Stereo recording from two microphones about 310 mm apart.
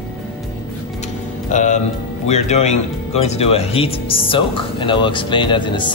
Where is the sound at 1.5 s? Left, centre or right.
Left.